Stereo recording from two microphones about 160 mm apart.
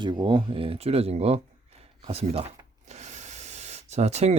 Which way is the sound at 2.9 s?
45° right (ahead or behind).